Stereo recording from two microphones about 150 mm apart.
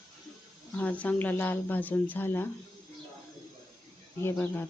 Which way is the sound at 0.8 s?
10° left (ahead or behind).